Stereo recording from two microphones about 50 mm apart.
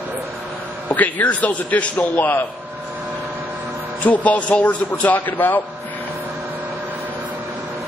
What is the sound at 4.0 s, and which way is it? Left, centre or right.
A man's voice, left.